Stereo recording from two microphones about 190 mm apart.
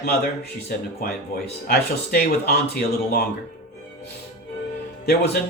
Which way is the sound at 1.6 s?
55° left (ahead or behind).